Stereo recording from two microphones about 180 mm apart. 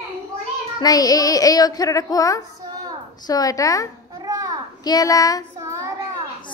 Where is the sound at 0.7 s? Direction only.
20° left (ahead or behind).